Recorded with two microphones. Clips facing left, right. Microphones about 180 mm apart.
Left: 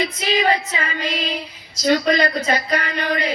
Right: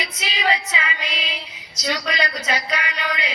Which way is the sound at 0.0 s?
50° left (ahead or behind).